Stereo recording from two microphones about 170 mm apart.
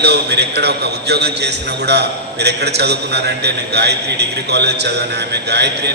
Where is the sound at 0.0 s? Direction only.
75° right (ahead or behind).